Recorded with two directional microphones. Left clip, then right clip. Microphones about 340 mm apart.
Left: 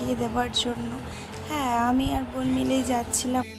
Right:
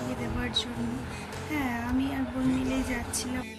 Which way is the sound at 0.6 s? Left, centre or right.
Centre.